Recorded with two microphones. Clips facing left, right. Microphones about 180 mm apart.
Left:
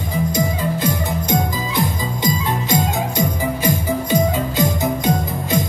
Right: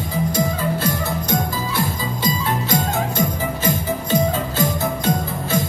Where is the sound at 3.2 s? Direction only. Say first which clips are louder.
Left 2 dB; 15° left (ahead or behind).